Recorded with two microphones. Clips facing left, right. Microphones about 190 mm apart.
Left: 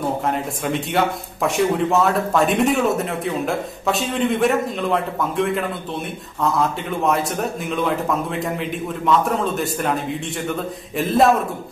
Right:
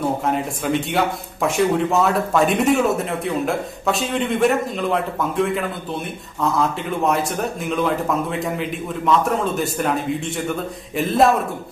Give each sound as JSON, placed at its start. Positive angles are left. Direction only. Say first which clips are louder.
{"t": 0.2, "sound": "speech", "louder": "right 1 dB", "side_deg": 0}